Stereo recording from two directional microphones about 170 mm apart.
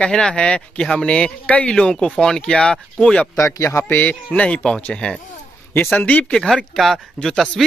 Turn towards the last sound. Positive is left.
turn(degrees=0)  # may be behind; listen again after turning